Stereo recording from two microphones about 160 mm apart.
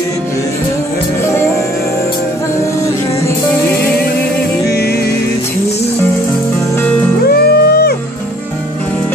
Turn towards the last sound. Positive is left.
turn(degrees=70)  # may be behind; listen again after turning